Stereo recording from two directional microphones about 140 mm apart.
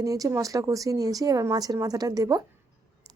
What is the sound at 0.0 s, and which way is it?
A woman's voice, 25° right (ahead or behind).